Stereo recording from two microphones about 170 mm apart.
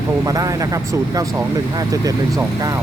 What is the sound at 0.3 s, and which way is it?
A man's voice, 20° right (ahead or behind).